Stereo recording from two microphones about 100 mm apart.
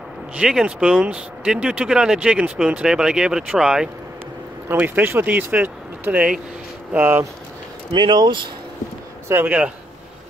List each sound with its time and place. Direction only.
0.4 s speech: 10° right (ahead or behind)
4.6 s speech: 20° right (ahead or behind)
7.9 s speech: 45° right (ahead or behind)
9.3 s speech: 15° right (ahead or behind)